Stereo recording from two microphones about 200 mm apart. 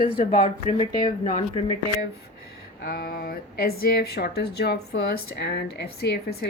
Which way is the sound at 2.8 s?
50° left (ahead or behind).